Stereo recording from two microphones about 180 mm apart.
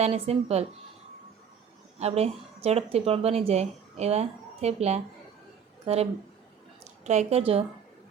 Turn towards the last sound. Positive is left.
turn(degrees=-35)  # may be behind; listen again after turning